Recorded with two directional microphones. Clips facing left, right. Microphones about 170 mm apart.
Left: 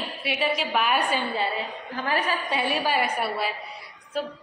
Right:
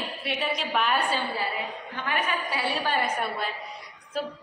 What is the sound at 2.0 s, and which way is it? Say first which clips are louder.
Speech: left 3 dB; 35° left (ahead or behind).